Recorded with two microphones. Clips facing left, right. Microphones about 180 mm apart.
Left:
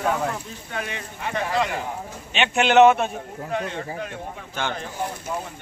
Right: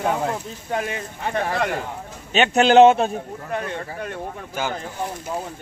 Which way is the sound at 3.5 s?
50° right (ahead or behind).